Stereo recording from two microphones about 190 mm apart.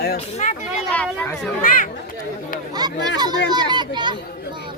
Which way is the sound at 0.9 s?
10° left (ahead or behind).